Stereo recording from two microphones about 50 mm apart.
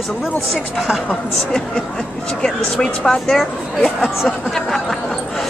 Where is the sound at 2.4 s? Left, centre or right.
Centre.